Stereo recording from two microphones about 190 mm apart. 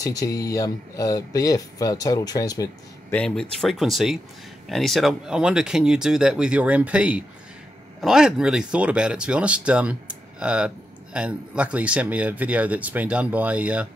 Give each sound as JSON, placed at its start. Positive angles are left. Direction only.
{"t": 0.0, "sound": "speech", "side_deg": 20}
{"t": 3.1, "sound": "speech", "side_deg": 5}